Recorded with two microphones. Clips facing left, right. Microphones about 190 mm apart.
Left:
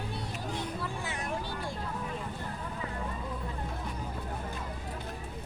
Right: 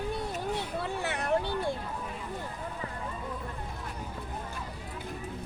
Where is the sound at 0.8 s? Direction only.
65° right (ahead or behind).